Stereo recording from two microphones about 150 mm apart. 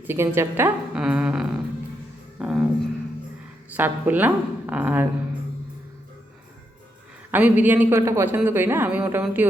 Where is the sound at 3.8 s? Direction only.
10° right (ahead or behind).